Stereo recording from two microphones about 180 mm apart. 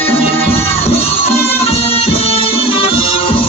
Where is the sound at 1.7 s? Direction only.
35° left (ahead or behind).